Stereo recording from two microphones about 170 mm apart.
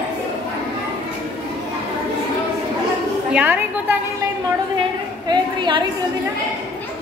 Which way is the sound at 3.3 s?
10° right (ahead or behind).